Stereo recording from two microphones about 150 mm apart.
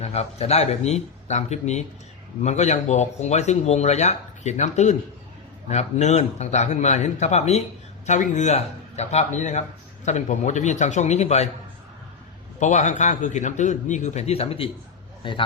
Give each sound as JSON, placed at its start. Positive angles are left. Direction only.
{"t": 0.0, "sound": "speech", "side_deg": 45}
{"t": 12.5, "sound": "a man's voice", "side_deg": 50}